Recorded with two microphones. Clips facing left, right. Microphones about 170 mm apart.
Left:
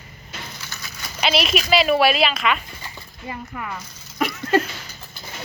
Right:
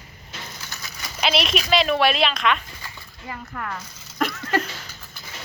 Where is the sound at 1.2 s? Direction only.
Centre (ahead or behind).